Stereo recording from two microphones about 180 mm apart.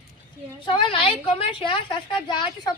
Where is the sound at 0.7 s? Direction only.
30° left (ahead or behind).